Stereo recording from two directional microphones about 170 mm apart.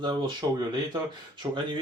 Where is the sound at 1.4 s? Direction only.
25° right (ahead or behind).